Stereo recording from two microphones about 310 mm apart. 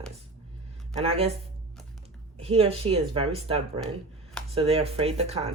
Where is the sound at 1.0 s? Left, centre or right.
Centre.